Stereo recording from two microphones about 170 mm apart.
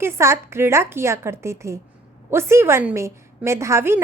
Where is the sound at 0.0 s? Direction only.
15° right (ahead or behind).